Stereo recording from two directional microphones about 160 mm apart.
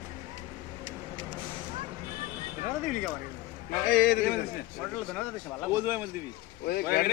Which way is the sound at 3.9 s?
65° left (ahead or behind).